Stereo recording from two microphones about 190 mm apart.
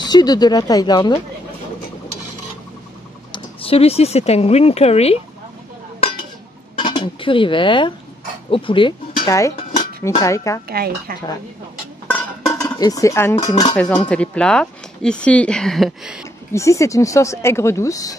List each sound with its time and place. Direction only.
0.0 s speech: 20° left (ahead or behind)
3.3 s speech: 30° left (ahead or behind)
6.8 s speech: 25° left (ahead or behind)
9.6 s dishes: 40° left (ahead or behind)
10.0 s speech: 15° left (ahead or behind)
10.7 s speech: 55° right (ahead or behind)
12.1 s dishes: 10° left (ahead or behind)
14.0 s speech: 5° left (ahead or behind)
16.5 s speech: 15° left (ahead or behind)